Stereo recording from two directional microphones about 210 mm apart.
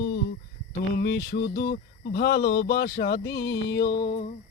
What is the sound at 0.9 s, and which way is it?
Music, 50° left (ahead or behind).